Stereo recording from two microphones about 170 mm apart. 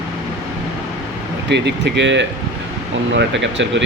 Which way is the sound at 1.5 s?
90° right.